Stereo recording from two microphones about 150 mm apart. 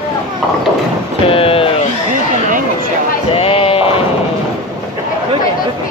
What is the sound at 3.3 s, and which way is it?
Sheep, 40° left (ahead or behind).